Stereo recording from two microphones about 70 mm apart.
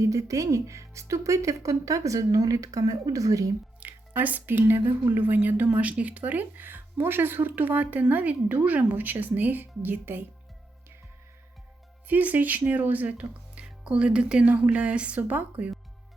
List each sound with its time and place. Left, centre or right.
0.0 s speech: right
3.8 s speech: right
12.0 s speech: right